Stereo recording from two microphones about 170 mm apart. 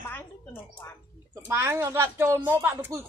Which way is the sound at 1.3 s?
15° right (ahead or behind).